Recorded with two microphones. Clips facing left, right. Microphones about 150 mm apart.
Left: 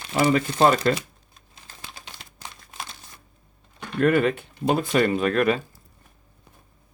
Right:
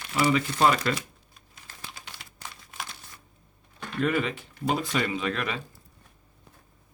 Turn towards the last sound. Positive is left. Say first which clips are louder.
# left 9 dB
turn(degrees=50)  # may be behind; listen again after turning